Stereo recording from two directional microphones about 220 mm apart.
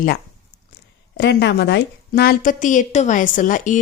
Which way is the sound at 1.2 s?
50° left (ahead or behind).